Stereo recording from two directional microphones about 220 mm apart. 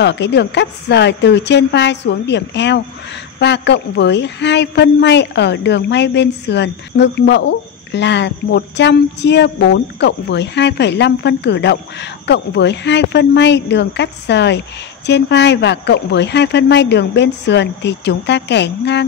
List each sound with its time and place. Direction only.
0.0 s a woman's voice: 50° left (ahead or behind)